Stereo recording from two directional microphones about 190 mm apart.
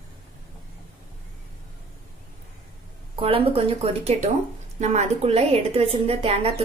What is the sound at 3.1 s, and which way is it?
A woman's voice, 30° right (ahead or behind).